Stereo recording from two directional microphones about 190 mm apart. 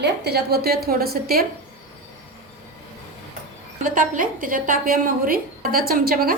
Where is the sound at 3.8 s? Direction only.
45° right (ahead or behind).